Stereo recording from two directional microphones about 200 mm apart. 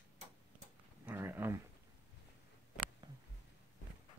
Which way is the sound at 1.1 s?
10° right (ahead or behind).